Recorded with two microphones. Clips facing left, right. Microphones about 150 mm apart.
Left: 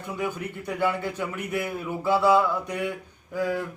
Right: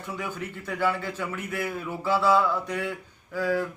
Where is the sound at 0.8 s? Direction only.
20° left (ahead or behind).